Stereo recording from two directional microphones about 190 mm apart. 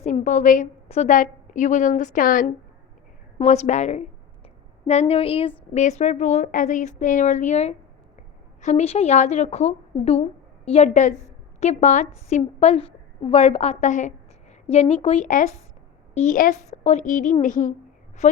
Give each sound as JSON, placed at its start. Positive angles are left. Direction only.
{"t": 0.0, "sound": "a woman's voice", "side_deg": 40}
{"t": 3.3, "sound": "a woman's voice", "side_deg": 35}